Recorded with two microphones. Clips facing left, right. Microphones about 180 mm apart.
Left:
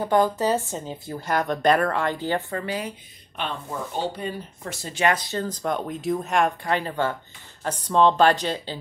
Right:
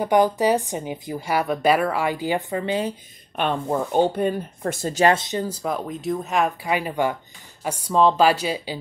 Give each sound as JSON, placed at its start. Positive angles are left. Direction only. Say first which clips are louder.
{"t": 0.0, "sound": "a woman's voice", "louder": "right 3 dB", "side_deg": -15}
{"t": 3.3, "sound": "speech", "louder": "right 8 dB", "side_deg": -55}
{"t": 5.0, "sound": "speech", "louder": "right 4 dB", "side_deg": -25}
{"t": 5.4, "sound": "a woman's voice", "louder": "right 1 dB", "side_deg": -5}